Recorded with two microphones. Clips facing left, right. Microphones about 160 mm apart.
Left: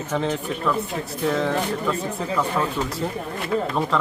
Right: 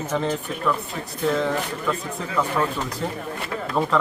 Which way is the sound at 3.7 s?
Centre (ahead or behind).